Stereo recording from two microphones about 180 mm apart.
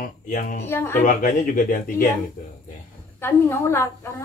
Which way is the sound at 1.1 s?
45° left (ahead or behind).